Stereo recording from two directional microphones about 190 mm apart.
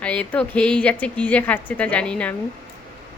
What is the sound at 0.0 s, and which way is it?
A woman's voice, 5° left (ahead or behind).